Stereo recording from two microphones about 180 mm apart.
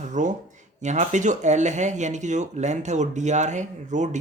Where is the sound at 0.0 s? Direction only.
40° right (ahead or behind).